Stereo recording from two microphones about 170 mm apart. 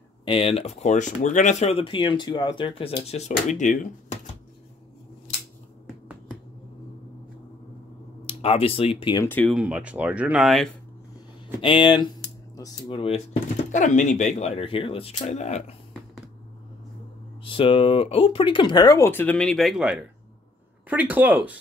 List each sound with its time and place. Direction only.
0.2 s speech: 35° left (ahead or behind)
3.1 s speech: 40° left (ahead or behind)
8.3 s speech: 35° left (ahead or behind)
9.2 s speech: 10° left (ahead or behind)
9.5 s speech: 5° right (ahead or behind)
11.6 s speech: 30° left (ahead or behind)
13.7 s speech: 45° left (ahead or behind)
17.4 s speech: 30° left (ahead or behind); by 21.5 s 10° right (ahead or behind)